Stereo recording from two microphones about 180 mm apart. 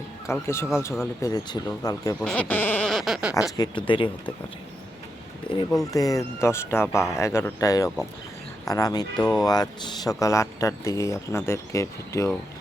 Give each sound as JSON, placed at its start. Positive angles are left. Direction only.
{"t": 0.3, "sound": "speech", "side_deg": 15}
{"t": 2.2, "sound": "speech", "side_deg": 5}
{"t": 3.6, "sound": "speech", "side_deg": 25}
{"t": 5.5, "sound": "speech", "side_deg": 30}
{"t": 9.2, "sound": "speech", "side_deg": 5}
{"t": 9.5, "sound": "speech", "side_deg": 20}